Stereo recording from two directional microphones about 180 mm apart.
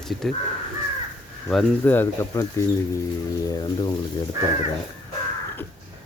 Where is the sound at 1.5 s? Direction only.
5° left (ahead or behind); by 3.9 s 20° left (ahead or behind).